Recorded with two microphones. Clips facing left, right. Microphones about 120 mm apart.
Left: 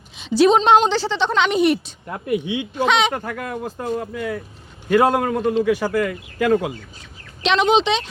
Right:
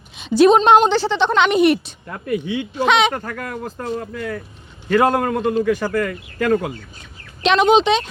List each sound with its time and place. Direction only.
0.2 s a woman's voice: 50° right (ahead or behind)
2.0 s speech: 20° left (ahead or behind)
2.8 s a woman's voice: 60° right (ahead or behind)
3.1 s a man's voice: 10° left (ahead or behind)
7.4 s a woman's voice: 50° right (ahead or behind)